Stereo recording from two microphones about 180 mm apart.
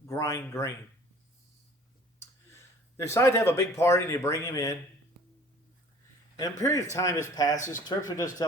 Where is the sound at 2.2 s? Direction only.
15° left (ahead or behind).